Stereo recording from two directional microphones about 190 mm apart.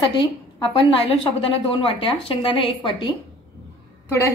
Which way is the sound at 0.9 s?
30° left (ahead or behind).